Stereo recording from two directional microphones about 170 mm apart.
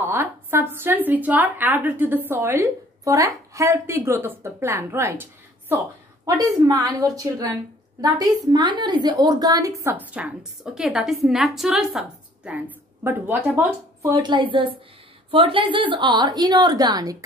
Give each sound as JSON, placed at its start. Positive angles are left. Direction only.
{"t": 0.0, "sound": "a woman's voice", "side_deg": -15}